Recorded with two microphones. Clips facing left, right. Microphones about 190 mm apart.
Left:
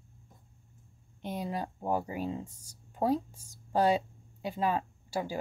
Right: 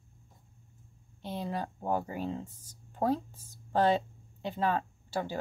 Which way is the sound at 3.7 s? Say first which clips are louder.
Even; 10° left (ahead or behind).